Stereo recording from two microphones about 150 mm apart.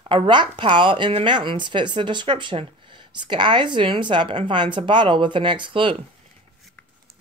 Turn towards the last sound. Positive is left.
turn(degrees=-35)  # may be behind; listen again after turning